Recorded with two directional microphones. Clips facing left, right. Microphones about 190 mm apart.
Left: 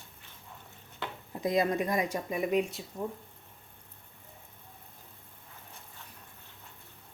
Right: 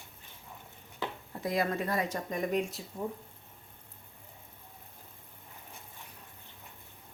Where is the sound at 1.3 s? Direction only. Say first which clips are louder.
Left 4 dB; 20° left (ahead or behind); by 3.1 s centre (ahead or behind).